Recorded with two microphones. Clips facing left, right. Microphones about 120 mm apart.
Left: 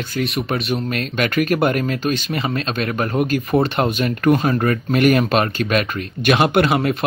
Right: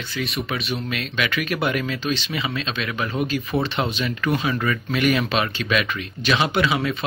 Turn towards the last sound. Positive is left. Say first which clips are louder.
# left 5 dB
turn(degrees=55)  # may be behind; listen again after turning